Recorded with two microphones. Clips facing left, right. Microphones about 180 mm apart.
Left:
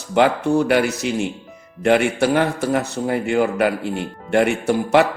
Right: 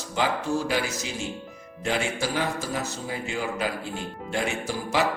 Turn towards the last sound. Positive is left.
turn(degrees=60)  # may be behind; listen again after turning